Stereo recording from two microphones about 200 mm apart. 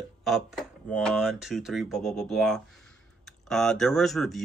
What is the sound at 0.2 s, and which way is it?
Speech, centre (ahead or behind).